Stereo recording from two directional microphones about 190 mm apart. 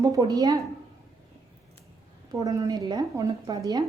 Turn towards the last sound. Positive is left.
turn(degrees=-20)  # may be behind; listen again after turning